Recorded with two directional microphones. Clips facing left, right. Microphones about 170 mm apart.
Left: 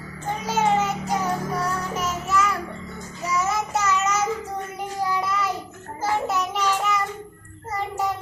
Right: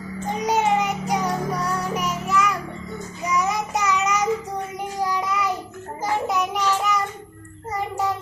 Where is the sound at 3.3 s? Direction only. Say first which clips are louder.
Right 1 dB; 15° right (ahead or behind).